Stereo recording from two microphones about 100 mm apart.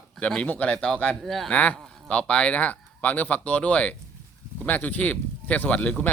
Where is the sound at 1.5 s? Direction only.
15° left (ahead or behind).